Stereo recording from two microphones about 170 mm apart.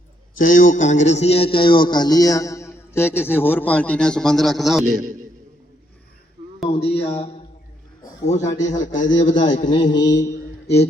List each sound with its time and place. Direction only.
0.3 s a man's voice: 50° left (ahead or behind); by 4.9 s centre (ahead or behind)
6.7 s a man's voice: 35° left (ahead or behind)
9.0 s a man's voice: 25° left (ahead or behind)